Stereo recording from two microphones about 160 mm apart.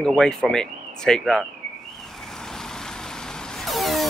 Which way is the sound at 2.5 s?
5° left (ahead or behind).